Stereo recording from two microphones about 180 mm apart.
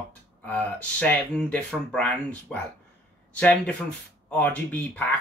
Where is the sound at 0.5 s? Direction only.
5° left (ahead or behind).